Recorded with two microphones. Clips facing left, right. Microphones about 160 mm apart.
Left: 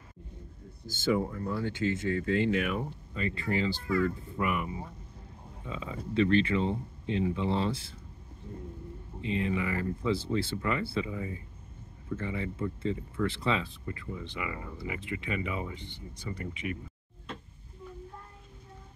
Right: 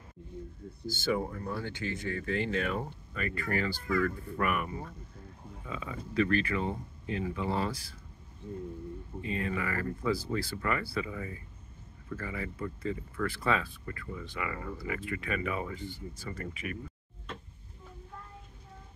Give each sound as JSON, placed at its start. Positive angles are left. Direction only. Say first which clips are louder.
{"t": 1.4, "sound": "speech", "louder": "left 5 dB", "side_deg": 25}
{"t": 9.2, "sound": "speech", "louder": "left 3 dB", "side_deg": 20}